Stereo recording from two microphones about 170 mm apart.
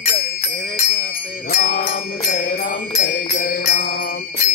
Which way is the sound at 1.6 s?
50° left (ahead or behind).